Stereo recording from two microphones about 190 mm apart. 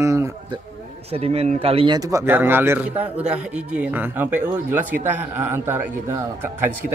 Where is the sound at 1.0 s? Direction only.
30° right (ahead or behind).